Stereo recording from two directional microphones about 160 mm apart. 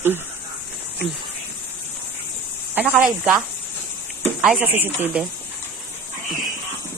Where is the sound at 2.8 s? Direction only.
10° right (ahead or behind).